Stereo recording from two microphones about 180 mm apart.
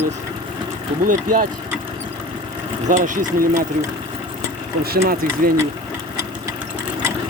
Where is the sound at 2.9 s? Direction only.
45° right (ahead or behind).